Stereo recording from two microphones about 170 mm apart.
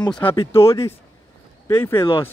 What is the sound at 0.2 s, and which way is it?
Speech, 30° left (ahead or behind).